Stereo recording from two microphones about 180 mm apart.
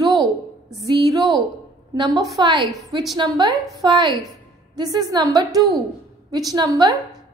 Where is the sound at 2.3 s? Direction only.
25° right (ahead or behind).